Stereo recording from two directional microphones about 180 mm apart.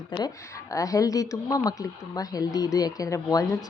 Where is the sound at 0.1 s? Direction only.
25° left (ahead or behind).